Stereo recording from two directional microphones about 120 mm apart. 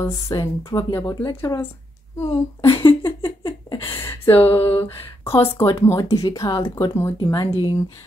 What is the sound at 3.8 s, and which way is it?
Speech, 20° left (ahead or behind).